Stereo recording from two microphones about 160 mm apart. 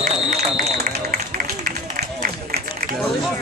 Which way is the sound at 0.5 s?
65° right (ahead or behind).